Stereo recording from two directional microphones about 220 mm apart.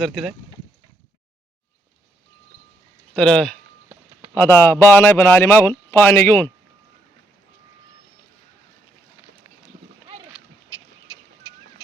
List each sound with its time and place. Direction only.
0.0 s speech: centre (ahead or behind)
3.2 s speech: 5° left (ahead or behind)
10.7 s duck: 15° left (ahead or behind)